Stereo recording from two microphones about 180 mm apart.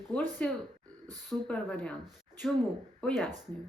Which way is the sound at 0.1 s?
10° left (ahead or behind).